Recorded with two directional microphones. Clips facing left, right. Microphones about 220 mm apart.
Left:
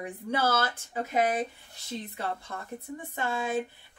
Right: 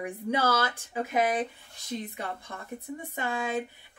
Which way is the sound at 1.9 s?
15° right (ahead or behind).